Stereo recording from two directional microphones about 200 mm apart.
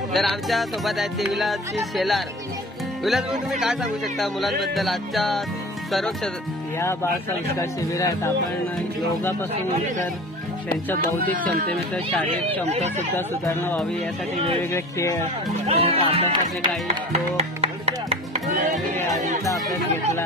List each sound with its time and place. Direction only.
0.1 s speech: centre (ahead or behind)
6.8 s speech: 15° left (ahead or behind)
11.3 s speech: 45° right (ahead or behind)
11.9 s speech: 5° left (ahead or behind)
12.6 s speech: 35° right (ahead or behind)
13.1 s speech: 10° left (ahead or behind)
15.6 s speech: 30° right (ahead or behind)